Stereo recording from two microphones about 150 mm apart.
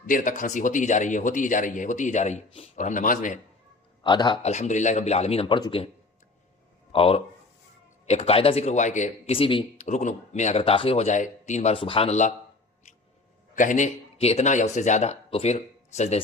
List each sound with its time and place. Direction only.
0.0 s speech: 60° left (ahead or behind)
4.0 s a man's voice: 30° left (ahead or behind)
4.4 s speech: 50° left (ahead or behind); by 5.8 s 30° left (ahead or behind)
6.9 s a man's voice: 40° left (ahead or behind); by 9.3 s 55° left (ahead or behind)
9.3 s a man's voice: 35° left (ahead or behind)
9.7 s speech: 50° left (ahead or behind)
13.6 s speech: 55° left (ahead or behind)